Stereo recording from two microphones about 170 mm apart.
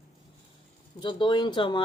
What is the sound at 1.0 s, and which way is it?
Speech, 25° left (ahead or behind).